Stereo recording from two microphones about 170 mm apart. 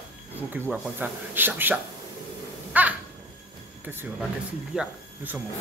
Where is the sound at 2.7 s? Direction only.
10° right (ahead or behind).